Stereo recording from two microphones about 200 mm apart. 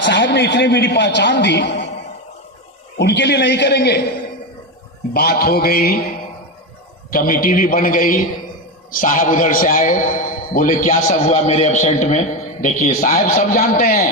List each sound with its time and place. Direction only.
0.0 s a man's voice: 60° left (ahead or behind)
3.0 s a man's voice: 60° left (ahead or behind)
5.1 s a man's voice: 50° left (ahead or behind)
7.1 s a man's voice: 45° left (ahead or behind)